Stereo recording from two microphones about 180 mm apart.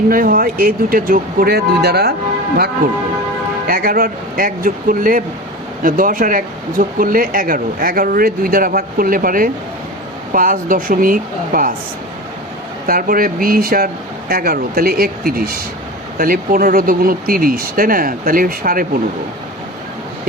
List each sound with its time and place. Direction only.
0.1 s speech: 50° right (ahead or behind)
3.7 s speech: 55° right (ahead or behind)
12.9 s speech: 55° right (ahead or behind)